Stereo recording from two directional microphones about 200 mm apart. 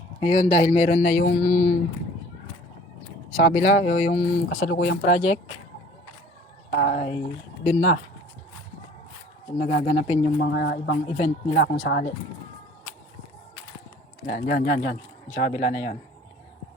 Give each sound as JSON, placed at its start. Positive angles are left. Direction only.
{"t": 0.2, "sound": "speech", "side_deg": 35}
{"t": 3.3, "sound": "speech", "side_deg": 35}
{"t": 6.7, "sound": "speech", "side_deg": 40}
{"t": 9.6, "sound": "speech", "side_deg": 35}
{"t": 10.4, "sound": "speech", "side_deg": 50}
{"t": 11.1, "sound": "speech", "side_deg": 35}
{"t": 11.6, "sound": "speech", "side_deg": 45}
{"t": 14.3, "sound": "speech", "side_deg": 45}